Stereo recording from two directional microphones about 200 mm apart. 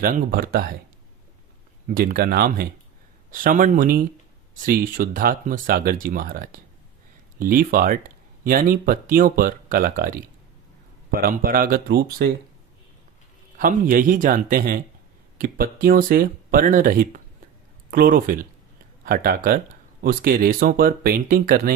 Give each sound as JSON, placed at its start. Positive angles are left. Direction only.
{"t": 0.0, "sound": "speech", "side_deg": -45}
{"t": 1.9, "sound": "speech", "side_deg": -45}
{"t": 13.6, "sound": "speech", "side_deg": -45}